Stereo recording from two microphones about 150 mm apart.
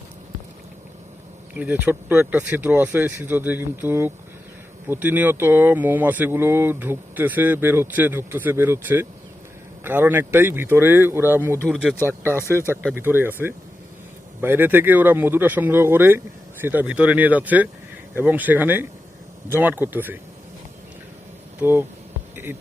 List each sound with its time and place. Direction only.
1.5 s speech: 10° right (ahead or behind)
11.7 s speech: centre (ahead or behind)
12.0 s speech: 15° right (ahead or behind)
12.6 s speech: 15° left (ahead or behind)
12.9 s speech: 15° right (ahead or behind)
21.6 s speech: 15° right (ahead or behind)